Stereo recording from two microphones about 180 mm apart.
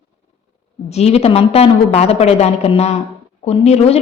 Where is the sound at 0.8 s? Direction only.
35° left (ahead or behind).